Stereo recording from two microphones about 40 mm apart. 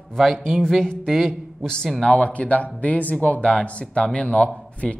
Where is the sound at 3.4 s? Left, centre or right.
Left.